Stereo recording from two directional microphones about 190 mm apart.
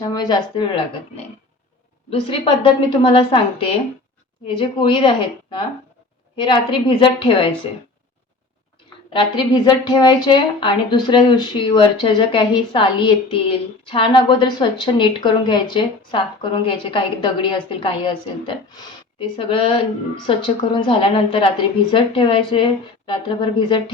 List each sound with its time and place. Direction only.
0.0 s a woman's voice: 20° left (ahead or behind)
9.1 s a woman's voice: 25° left (ahead or behind)